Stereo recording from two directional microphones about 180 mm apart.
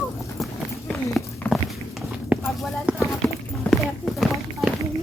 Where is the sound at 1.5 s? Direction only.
Centre (ahead or behind).